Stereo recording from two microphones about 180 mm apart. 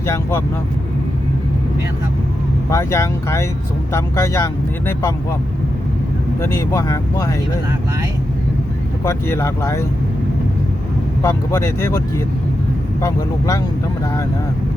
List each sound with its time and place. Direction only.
0.0 s speech: 15° left (ahead or behind)
2.6 s speech: 15° left (ahead or behind)
6.4 s speech: 15° left (ahead or behind)
9.0 s speech: 15° left (ahead or behind)
11.2 s speech: 15° left (ahead or behind)
13.0 s speech: 20° left (ahead or behind)